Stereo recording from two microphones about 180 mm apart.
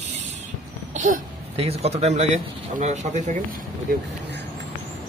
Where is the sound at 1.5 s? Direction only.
35° right (ahead or behind).